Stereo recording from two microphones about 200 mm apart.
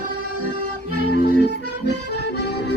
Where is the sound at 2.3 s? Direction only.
55° left (ahead or behind).